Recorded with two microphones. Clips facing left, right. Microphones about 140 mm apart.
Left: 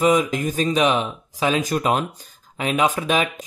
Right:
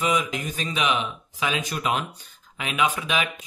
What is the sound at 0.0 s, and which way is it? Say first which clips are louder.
Speech: left 7 dB; 45° left (ahead or behind).